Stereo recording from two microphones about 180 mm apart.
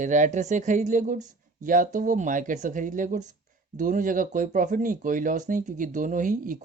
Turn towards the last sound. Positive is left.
turn(degrees=-45)  # may be behind; listen again after turning